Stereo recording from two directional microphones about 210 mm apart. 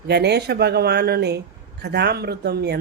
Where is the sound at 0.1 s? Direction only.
50° right (ahead or behind).